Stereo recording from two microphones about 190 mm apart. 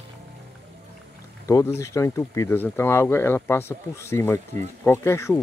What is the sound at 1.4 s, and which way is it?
Speech, 15° left (ahead or behind).